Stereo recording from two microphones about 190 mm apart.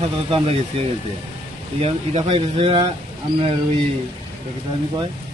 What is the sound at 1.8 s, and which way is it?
Speech, 30° right (ahead or behind).